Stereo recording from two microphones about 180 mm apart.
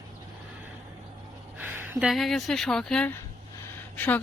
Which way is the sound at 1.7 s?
10° right (ahead or behind).